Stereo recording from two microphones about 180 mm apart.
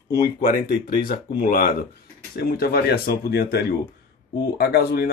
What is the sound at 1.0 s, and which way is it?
Speech, 50° left (ahead or behind).